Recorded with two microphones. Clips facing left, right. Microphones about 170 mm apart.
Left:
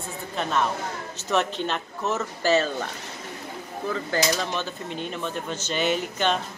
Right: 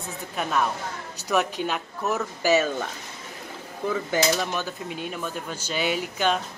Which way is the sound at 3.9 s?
10° right (ahead or behind).